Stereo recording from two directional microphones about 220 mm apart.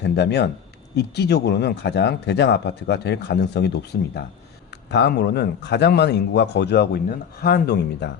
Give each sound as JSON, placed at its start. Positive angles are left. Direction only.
{"t": 0.0, "sound": "speech", "side_deg": 50}